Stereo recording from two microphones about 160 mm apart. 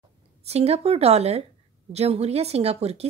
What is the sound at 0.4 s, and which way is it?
A woman's voice, 40° right (ahead or behind).